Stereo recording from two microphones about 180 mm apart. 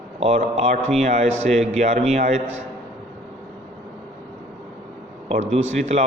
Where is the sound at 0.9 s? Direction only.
40° right (ahead or behind).